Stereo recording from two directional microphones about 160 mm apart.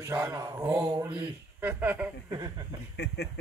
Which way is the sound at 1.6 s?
10° right (ahead or behind).